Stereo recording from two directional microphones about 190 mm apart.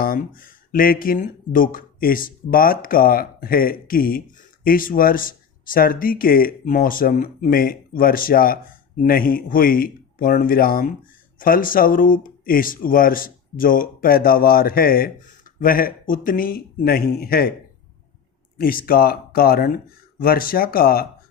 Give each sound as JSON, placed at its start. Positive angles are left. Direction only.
{"t": 0.0, "sound": "speech", "side_deg": 45}
{"t": 18.5, "sound": "speech", "side_deg": 50}